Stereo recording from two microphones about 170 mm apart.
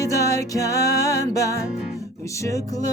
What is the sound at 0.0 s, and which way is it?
Music, 20° left (ahead or behind).